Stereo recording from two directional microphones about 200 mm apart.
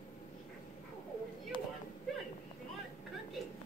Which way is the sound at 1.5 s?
25° left (ahead or behind).